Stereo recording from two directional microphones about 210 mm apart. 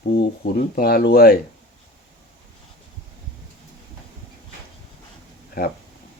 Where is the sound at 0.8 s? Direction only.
50° left (ahead or behind).